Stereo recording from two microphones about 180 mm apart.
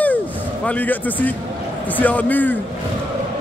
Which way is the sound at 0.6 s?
10° left (ahead or behind).